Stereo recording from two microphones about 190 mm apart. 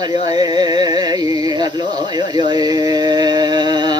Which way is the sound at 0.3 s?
20° right (ahead or behind).